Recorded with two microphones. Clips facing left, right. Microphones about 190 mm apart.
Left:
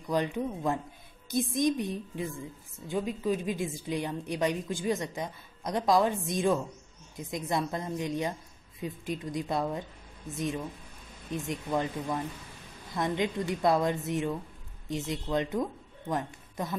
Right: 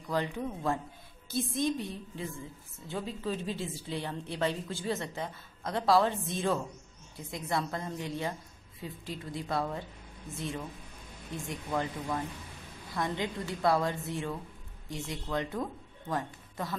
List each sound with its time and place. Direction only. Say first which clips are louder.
0.1 s a woman's voice: left 3 dB; 20° left (ahead or behind)
11.3 s a woman's voice: left 3 dB; 20° left (ahead or behind)